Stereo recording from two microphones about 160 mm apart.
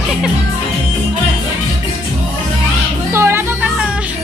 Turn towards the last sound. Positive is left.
turn(degrees=-15)  # may be behind; listen again after turning